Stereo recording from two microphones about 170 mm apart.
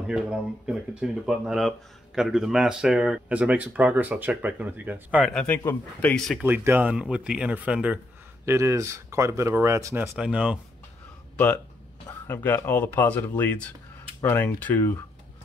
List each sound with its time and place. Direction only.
0.0 s speech: 5° right (ahead or behind)
5.2 s speech: 5° left (ahead or behind)
5.6 s speech: 15° left (ahead or behind)
6.0 s speech: centre (ahead or behind)
6.4 s speech: 10° right (ahead or behind)
10.1 s speech: 5° right (ahead or behind)
11.3 s speech: 10° left (ahead or behind)